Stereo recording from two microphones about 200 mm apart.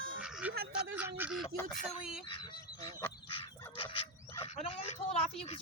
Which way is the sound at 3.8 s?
25° left (ahead or behind).